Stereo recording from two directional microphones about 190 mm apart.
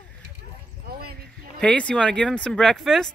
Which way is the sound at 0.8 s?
55° right (ahead or behind).